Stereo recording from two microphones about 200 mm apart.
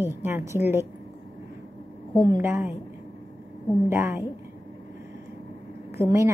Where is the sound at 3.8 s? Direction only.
10° right (ahead or behind).